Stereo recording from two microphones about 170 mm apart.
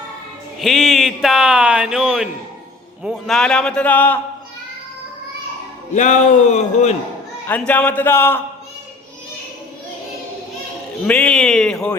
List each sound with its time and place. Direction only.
0.6 s a man's voice: centre (ahead or behind)
5.9 s speech: 45° left (ahead or behind)
7.4 s speech: 10° left (ahead or behind)
11.0 s a man's voice: 5° left (ahead or behind)